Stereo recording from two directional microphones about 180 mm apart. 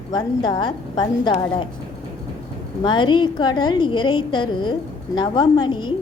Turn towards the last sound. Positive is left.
turn(degrees=25)  # may be behind; listen again after turning